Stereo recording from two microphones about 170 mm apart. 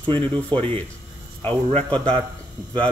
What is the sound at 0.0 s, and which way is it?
Speech, 30° right (ahead or behind).